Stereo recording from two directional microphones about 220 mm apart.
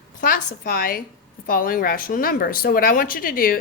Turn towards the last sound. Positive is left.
turn(degrees=40)  # may be behind; listen again after turning